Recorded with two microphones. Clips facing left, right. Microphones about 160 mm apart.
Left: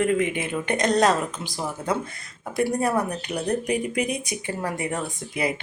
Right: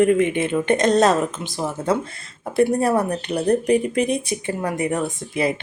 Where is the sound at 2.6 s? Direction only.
30° right (ahead or behind).